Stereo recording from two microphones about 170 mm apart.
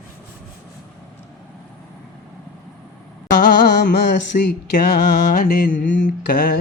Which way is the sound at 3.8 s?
75° left (ahead or behind).